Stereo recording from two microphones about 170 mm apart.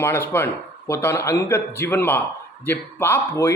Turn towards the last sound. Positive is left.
turn(degrees=15)  # may be behind; listen again after turning